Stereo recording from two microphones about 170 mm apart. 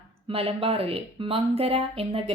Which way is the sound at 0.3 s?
35° right (ahead or behind).